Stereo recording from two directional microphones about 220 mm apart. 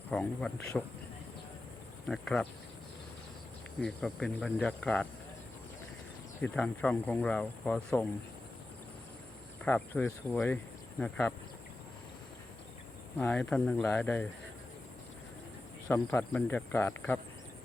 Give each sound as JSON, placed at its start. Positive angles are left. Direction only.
{"t": 0.1, "sound": "speech", "side_deg": 5}
{"t": 2.0, "sound": "speech", "side_deg": 5}
{"t": 3.8, "sound": "speech", "side_deg": 0}
{"t": 6.4, "sound": "speech", "side_deg": 5}
{"t": 9.6, "sound": "speech", "side_deg": 10}
{"t": 13.1, "sound": "speech", "side_deg": 5}
{"t": 15.9, "sound": "speech", "side_deg": 10}